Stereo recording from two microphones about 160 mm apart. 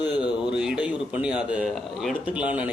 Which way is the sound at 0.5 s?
5° right (ahead or behind).